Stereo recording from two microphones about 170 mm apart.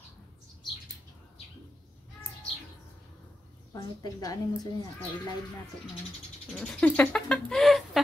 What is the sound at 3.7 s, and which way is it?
Speech, 20° left (ahead or behind).